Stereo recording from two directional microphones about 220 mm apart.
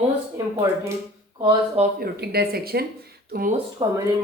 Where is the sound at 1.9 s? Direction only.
45° right (ahead or behind).